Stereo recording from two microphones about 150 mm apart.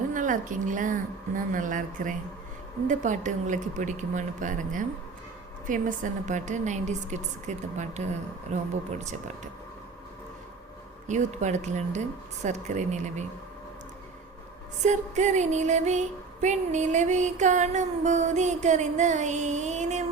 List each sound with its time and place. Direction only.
0.1 s speech: 60° right (ahead or behind)
5.6 s female singing: 60° right (ahead or behind)
11.1 s female singing: 50° right (ahead or behind)
14.8 s female singing: 50° right (ahead or behind)